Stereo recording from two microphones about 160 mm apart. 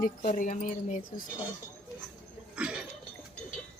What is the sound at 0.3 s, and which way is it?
Speech, 50° left (ahead or behind).